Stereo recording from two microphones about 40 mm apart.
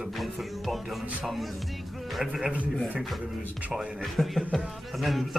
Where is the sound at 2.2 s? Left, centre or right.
Centre.